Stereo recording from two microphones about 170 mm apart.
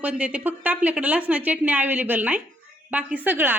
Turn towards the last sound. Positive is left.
turn(degrees=-10)  # may be behind; listen again after turning